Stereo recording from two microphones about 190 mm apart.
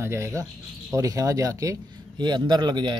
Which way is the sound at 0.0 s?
15° right (ahead or behind).